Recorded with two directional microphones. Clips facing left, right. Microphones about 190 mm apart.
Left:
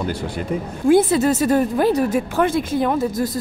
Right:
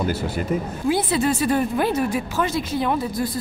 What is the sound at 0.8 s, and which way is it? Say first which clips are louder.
A woman's voice: left 7 dB; 45° left (ahead or behind).